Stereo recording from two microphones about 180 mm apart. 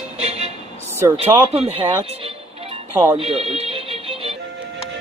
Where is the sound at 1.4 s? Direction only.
35° right (ahead or behind).